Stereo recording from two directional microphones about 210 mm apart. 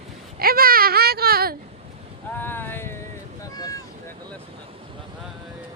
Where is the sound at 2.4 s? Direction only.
10° left (ahead or behind).